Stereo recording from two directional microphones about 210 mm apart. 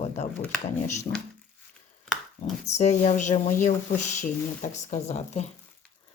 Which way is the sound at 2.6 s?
35° left (ahead or behind).